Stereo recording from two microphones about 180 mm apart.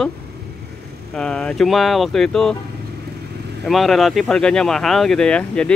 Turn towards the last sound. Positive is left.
turn(degrees=5)  # may be behind; listen again after turning